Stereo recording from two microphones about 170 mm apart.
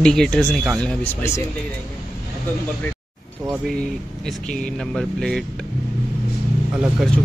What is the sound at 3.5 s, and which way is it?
Speech, centre (ahead or behind).